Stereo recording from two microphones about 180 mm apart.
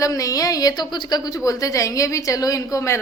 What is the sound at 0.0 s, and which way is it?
A woman's voice, 20° left (ahead or behind).